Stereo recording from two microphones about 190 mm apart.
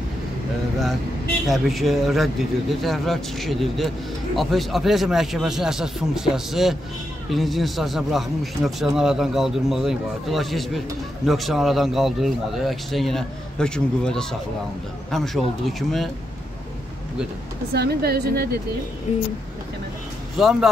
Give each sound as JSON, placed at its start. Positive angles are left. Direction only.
{"t": 1.5, "sound": "speech", "side_deg": 0}
{"t": 17.7, "sound": "a woman's voice", "side_deg": -55}
{"t": 20.4, "sound": "speech", "side_deg": 0}